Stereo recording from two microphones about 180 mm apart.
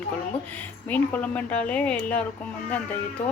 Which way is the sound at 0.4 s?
10° left (ahead or behind).